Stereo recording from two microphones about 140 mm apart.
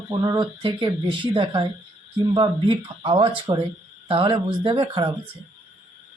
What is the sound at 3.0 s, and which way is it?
Speech, 35° right (ahead or behind).